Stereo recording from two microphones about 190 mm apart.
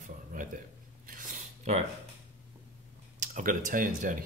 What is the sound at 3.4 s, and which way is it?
Speech, 45° right (ahead or behind).